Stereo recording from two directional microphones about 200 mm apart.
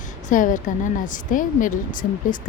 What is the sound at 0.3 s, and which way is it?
Speech, 40° left (ahead or behind).